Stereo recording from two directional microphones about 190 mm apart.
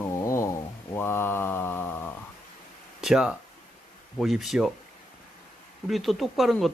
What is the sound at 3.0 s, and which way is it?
Speech, 5° right (ahead or behind).